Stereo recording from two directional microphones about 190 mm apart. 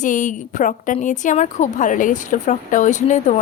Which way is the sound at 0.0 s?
40° left (ahead or behind).